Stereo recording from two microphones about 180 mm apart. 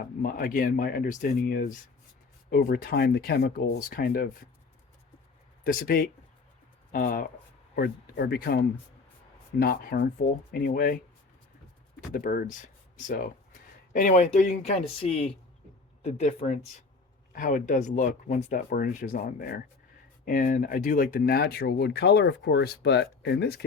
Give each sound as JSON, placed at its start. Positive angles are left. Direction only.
{"t": 0.0, "sound": "speech", "side_deg": 55}
{"t": 5.6, "sound": "speech", "side_deg": 55}
{"t": 7.8, "sound": "speech", "side_deg": 65}
{"t": 11.9, "sound": "speech", "side_deg": 45}